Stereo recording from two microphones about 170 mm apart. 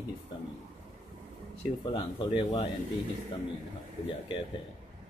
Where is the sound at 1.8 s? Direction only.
30° left (ahead or behind).